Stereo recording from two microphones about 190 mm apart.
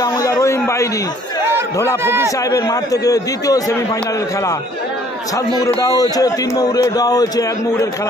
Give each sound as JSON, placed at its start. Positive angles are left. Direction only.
{"t": 0.0, "sound": "a sound", "side_deg": 20}
{"t": 2.0, "sound": "a man's voice", "side_deg": -10}
{"t": 2.3, "sound": "a man's voice", "side_deg": 15}
{"t": 5.8, "sound": "a man's voice", "side_deg": 20}